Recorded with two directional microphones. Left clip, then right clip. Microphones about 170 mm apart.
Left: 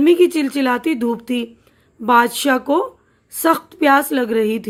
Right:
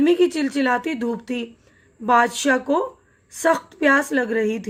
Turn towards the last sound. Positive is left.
turn(degrees=45)  # may be behind; listen again after turning